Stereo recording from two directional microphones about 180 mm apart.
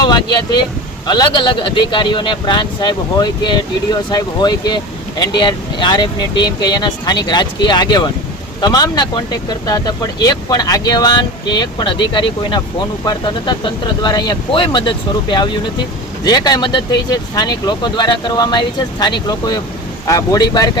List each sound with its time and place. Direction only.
0.0 s speech: 25° left (ahead or behind)